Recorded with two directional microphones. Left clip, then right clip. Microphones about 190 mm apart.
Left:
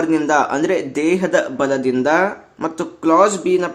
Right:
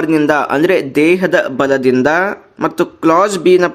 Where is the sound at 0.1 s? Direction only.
25° right (ahead or behind).